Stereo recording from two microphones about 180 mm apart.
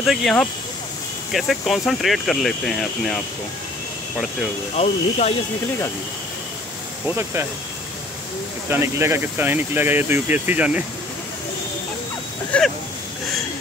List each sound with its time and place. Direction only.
0.0 s speech: centre (ahead or behind)
4.7 s speech: 35° left (ahead or behind)
7.1 s speech: 15° right (ahead or behind)
8.6 s speech: 15° right (ahead or behind)
12.5 s speech: 5° left (ahead or behind)